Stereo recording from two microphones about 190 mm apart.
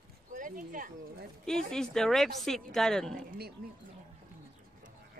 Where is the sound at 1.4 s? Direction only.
5° left (ahead or behind).